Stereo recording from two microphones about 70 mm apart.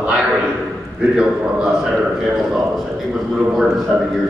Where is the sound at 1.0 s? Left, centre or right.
Centre.